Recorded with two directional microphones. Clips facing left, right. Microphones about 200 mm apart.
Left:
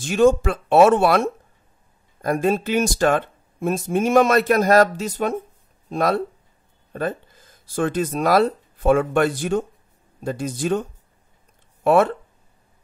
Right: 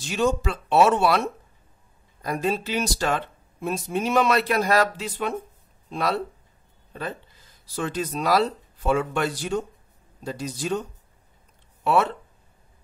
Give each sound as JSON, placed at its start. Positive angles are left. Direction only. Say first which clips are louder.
{"t": 0.0, "sound": "speech", "louder": "left 7 dB", "side_deg": 50}